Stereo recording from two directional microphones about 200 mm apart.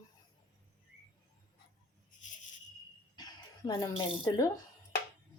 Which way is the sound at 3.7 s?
15° left (ahead or behind).